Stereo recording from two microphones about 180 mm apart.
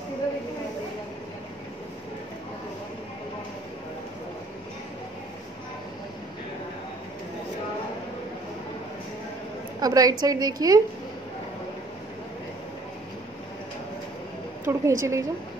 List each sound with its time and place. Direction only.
9.8 s a woman's voice: 20° right (ahead or behind)
14.7 s a woman's voice: 15° right (ahead or behind)